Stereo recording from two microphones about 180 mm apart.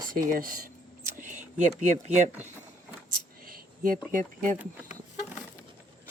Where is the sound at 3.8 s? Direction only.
50° right (ahead or behind).